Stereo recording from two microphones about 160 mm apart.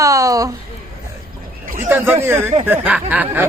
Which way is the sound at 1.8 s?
10° right (ahead or behind).